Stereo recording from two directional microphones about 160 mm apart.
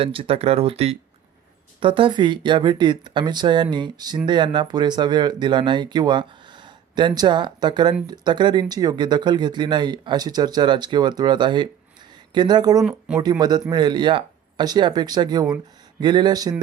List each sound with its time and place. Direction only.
0.0 s speech: 35° right (ahead or behind)
12.8 s speech: 5° right (ahead or behind)
13.4 s speech: 25° right (ahead or behind)